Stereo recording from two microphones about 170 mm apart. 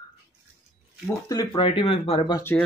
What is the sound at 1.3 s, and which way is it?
Speech, 20° left (ahead or behind).